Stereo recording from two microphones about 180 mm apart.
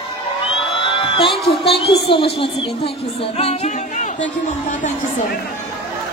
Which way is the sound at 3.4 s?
35° left (ahead or behind).